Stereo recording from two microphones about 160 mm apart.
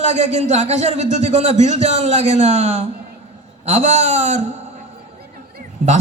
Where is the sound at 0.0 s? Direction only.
45° right (ahead or behind).